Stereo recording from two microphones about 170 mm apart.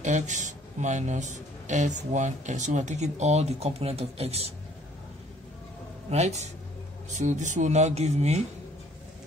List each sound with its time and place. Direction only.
0.0 s a man's voice: 45° right (ahead or behind)
6.0 s speech: 40° right (ahead or behind)